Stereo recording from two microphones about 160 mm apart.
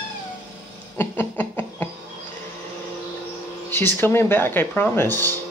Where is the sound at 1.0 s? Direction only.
15° left (ahead or behind).